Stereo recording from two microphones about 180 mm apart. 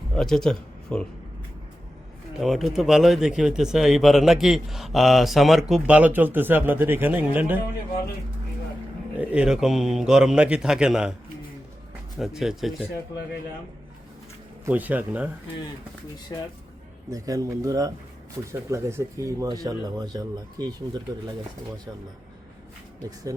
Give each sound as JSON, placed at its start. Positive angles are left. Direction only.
{"t": 0.1, "sound": "speech", "side_deg": 5}
{"t": 2.4, "sound": "speech", "side_deg": 0}
{"t": 9.1, "sound": "speech", "side_deg": -5}
{"t": 12.2, "sound": "speech", "side_deg": 0}
{"t": 14.6, "sound": "speech", "side_deg": -10}
{"t": 17.1, "sound": "speech", "side_deg": -20}